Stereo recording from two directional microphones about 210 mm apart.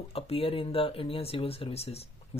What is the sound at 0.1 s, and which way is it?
Speech, 25° left (ahead or behind).